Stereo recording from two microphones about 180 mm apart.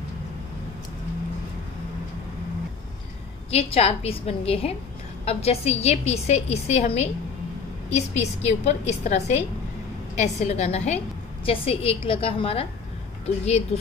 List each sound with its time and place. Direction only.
3.5 s a woman's voice: 35° left (ahead or behind)